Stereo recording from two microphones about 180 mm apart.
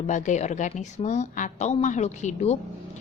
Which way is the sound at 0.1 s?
40° left (ahead or behind).